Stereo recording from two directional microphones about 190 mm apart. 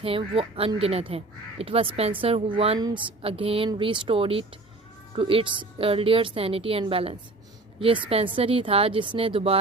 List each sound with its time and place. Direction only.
0.0 s speech: 30° right (ahead or behind)